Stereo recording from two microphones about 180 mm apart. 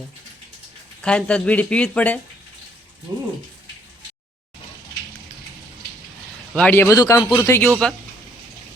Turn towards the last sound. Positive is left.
turn(degrees=15)  # may be behind; listen again after turning